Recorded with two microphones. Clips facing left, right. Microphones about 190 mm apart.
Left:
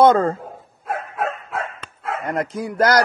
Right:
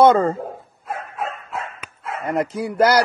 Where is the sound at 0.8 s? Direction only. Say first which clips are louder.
Left 3 dB; 70° left (ahead or behind).